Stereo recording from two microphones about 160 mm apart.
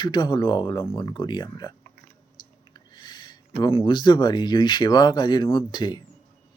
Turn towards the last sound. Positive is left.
turn(degrees=30)  # may be behind; listen again after turning